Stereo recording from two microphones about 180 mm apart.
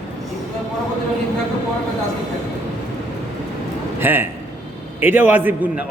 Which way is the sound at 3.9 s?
10° right (ahead or behind).